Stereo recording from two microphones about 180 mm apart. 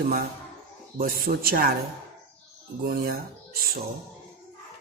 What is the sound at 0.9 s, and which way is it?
Speech, 55° right (ahead or behind).